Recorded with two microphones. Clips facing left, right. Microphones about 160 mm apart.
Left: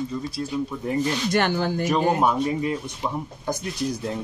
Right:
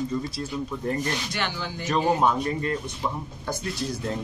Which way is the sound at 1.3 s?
50° left (ahead or behind).